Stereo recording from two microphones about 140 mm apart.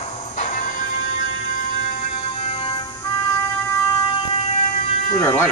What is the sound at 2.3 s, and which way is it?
Music, 45° left (ahead or behind).